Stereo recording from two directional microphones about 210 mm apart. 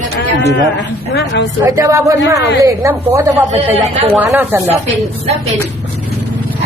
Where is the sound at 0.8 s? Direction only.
55° left (ahead or behind).